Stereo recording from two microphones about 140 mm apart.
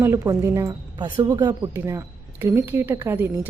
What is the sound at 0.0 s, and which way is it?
A woman's voice, 20° right (ahead or behind).